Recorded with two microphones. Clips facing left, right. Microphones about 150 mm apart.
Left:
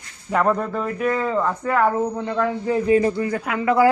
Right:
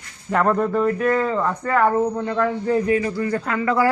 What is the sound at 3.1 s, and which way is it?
Speech, 15° left (ahead or behind).